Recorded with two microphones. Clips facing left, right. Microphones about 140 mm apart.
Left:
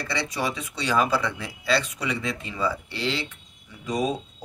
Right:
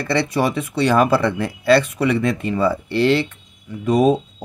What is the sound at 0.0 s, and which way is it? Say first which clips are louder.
Speech: right 9 dB; 55° right (ahead or behind).